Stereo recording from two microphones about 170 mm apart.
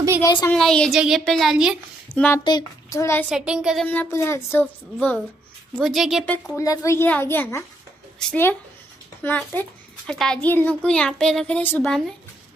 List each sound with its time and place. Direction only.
0.2 s speech: 25° left (ahead or behind)
0.5 s a child's voice: 5° left (ahead or behind)
2.1 s a woman's voice: 10° left (ahead or behind)
2.4 s a woman's voice: 20° left (ahead or behind)
3.3 s a child's voice: 5° right (ahead or behind)
3.8 s a woman's voice: 10° left (ahead or behind)
5.8 s a child's voice: centre (ahead or behind)
6.3 s a woman's voice: 15° left (ahead or behind)